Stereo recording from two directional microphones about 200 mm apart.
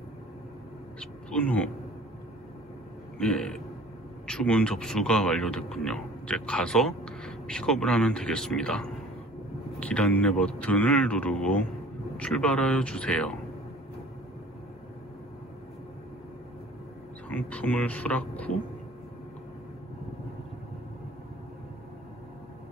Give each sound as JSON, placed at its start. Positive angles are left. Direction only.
{"t": 1.3, "sound": "speech", "side_deg": 5}
{"t": 3.2, "sound": "a man's voice", "side_deg": 5}
{"t": 17.3, "sound": "a man's voice", "side_deg": 10}